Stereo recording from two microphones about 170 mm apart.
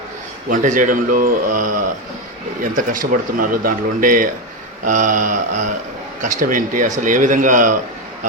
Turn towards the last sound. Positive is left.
turn(degrees=-50)  # may be behind; listen again after turning